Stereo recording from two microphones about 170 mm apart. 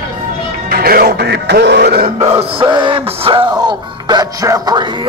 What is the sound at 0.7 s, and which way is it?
Speech, 60° right (ahead or behind).